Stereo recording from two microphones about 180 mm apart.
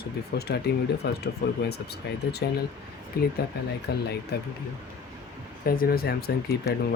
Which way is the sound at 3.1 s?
60° left (ahead or behind).